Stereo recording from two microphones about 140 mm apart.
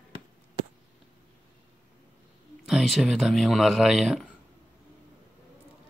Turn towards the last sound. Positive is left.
turn(degrees=-5)  # may be behind; listen again after turning